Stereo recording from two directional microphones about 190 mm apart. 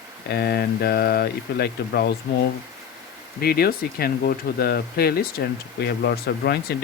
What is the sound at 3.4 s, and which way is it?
Speech, 55° left (ahead or behind).